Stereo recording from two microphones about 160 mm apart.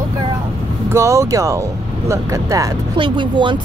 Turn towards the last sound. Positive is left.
turn(degrees=-30)  # may be behind; listen again after turning